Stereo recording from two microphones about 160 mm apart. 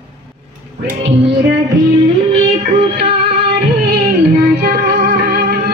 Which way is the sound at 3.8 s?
90° right.